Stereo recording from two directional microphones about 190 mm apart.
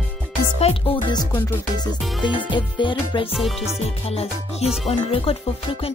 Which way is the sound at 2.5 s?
25° left (ahead or behind).